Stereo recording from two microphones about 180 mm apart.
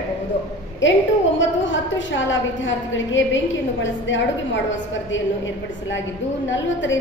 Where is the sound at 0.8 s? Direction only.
90° left.